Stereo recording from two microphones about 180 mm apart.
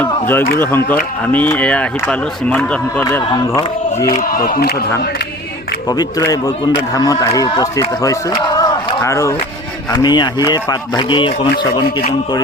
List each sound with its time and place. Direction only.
0.0 s a sound: 10° left (ahead or behind)
0.9 s speech: 10° left (ahead or behind)
3.3 s a man's voice: 25° left (ahead or behind)
4.2 s speech: 55° left (ahead or behind)
5.9 s a man's voice: 20° left (ahead or behind)